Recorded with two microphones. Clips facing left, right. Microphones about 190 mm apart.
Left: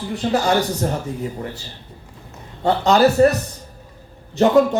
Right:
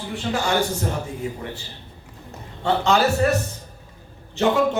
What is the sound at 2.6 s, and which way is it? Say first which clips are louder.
Speech: left 3 dB; 40° left (ahead or behind).